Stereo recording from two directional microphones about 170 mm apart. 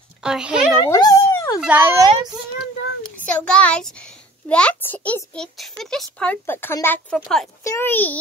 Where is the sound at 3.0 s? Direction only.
10° left (ahead or behind).